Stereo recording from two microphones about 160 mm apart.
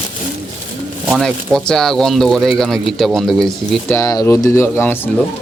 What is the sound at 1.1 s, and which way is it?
Speech, centre (ahead or behind).